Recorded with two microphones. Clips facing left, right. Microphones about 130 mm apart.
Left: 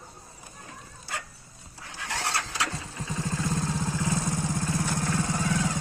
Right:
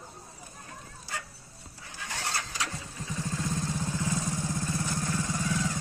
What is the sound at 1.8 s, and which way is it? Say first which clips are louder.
Vehicle: left 4 dB; 80° left.